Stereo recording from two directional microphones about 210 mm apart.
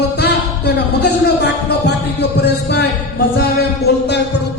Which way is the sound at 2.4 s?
55° left (ahead or behind).